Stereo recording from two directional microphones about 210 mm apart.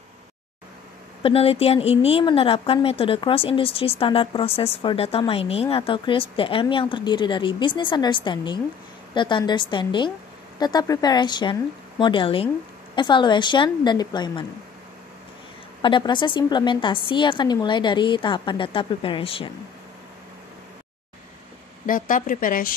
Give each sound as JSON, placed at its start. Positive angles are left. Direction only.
{"t": 1.2, "sound": "a woman's voice", "side_deg": 25}
{"t": 15.8, "sound": "a woman's voice", "side_deg": 25}
{"t": 21.8, "sound": "a woman's voice", "side_deg": 40}